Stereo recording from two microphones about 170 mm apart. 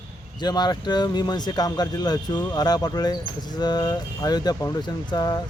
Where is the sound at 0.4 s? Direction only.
25° left (ahead or behind).